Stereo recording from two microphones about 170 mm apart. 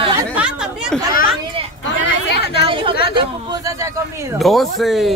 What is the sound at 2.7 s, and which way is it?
A man's voice, 30° right (ahead or behind).